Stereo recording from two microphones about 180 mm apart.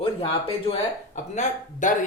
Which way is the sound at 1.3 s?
40° left (ahead or behind).